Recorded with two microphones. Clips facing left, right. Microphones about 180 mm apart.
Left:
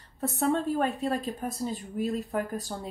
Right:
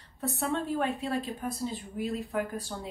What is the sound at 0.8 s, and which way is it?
Speech, 40° left (ahead or behind).